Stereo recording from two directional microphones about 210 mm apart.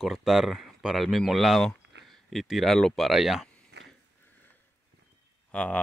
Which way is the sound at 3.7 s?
55° right (ahead or behind).